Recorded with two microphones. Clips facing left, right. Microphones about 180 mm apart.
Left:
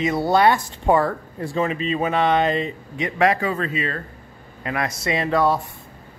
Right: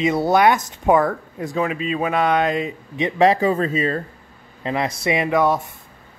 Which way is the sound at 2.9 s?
25° right (ahead or behind).